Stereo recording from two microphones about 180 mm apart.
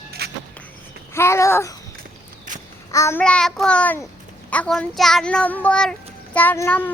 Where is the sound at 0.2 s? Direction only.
60° right (ahead or behind).